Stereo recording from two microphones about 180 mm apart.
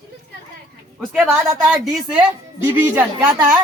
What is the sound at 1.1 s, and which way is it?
A woman's voice, 5° right (ahead or behind).